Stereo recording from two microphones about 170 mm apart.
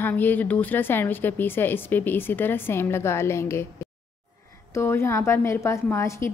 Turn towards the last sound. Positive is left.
turn(degrees=15)  # may be behind; listen again after turning